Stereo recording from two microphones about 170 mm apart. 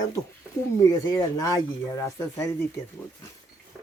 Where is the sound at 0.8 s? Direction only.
20° left (ahead or behind).